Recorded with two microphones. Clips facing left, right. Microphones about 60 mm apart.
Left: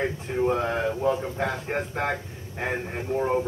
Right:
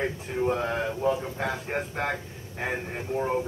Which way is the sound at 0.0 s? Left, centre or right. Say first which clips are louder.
Left 2 dB; centre.